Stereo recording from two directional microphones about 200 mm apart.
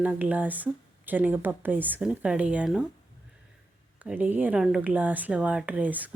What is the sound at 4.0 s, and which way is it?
Speech, 10° right (ahead or behind).